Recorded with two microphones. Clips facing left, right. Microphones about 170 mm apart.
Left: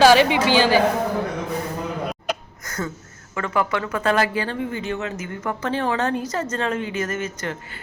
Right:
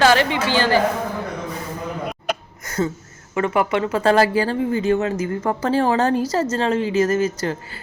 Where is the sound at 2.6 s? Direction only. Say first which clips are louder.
Right 7 dB; 25° right (ahead or behind).